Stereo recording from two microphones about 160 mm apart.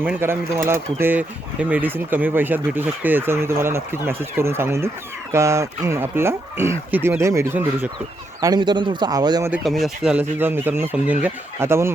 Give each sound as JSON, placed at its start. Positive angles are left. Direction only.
{"t": 0.0, "sound": "speech", "side_deg": -10}
{"t": 9.6, "sound": "speech", "side_deg": 0}